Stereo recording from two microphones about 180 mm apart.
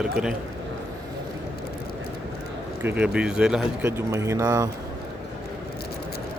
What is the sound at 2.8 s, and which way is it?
Speech, 10° right (ahead or behind).